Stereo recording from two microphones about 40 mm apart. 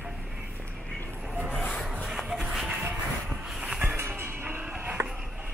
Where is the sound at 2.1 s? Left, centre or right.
Centre.